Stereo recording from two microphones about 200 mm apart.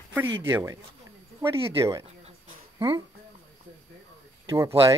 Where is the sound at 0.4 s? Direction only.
15° right (ahead or behind).